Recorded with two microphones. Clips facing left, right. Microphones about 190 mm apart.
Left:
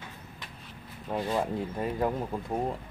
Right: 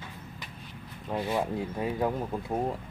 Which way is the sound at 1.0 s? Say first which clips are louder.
Even; centre (ahead or behind).